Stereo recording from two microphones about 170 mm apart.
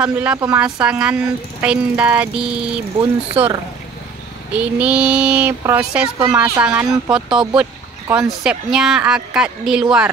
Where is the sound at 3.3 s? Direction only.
30° right (ahead or behind).